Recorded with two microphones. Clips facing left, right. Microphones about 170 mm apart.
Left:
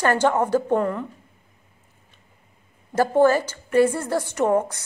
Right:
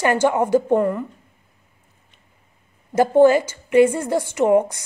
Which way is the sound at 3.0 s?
15° right (ahead or behind).